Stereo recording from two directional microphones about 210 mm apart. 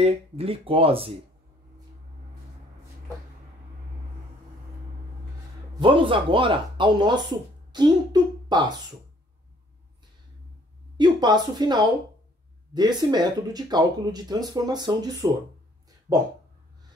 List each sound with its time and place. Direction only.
0.0 s speech: 25° right (ahead or behind)
5.8 s speech: 25° right (ahead or behind)
11.0 s speech: 20° right (ahead or behind)